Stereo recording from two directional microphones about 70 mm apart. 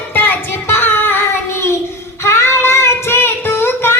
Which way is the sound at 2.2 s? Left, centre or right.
Left.